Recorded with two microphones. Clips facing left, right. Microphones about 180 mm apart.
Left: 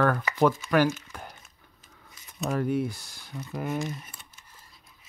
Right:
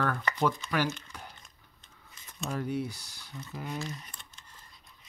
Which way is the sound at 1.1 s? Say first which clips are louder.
Left 4 dB; 50° left (ahead or behind).